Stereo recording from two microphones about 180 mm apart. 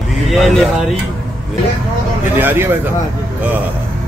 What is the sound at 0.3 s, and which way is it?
Speech, centre (ahead or behind).